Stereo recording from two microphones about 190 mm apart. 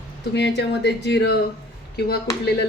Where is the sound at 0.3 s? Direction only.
65° left (ahead or behind).